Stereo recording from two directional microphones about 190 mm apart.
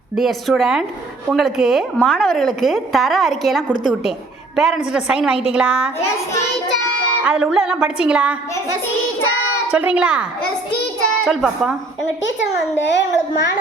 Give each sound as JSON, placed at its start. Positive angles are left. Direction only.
{"t": 0.2, "sound": "a woman's voice", "side_deg": 0}
{"t": 7.3, "sound": "a woman's voice", "side_deg": -5}
{"t": 9.7, "sound": "a woman's voice", "side_deg": -5}
{"t": 12.8, "sound": "a child's voice", "side_deg": 70}